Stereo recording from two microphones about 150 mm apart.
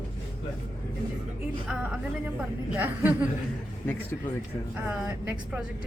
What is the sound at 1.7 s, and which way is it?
A woman's voice, 5° right (ahead or behind).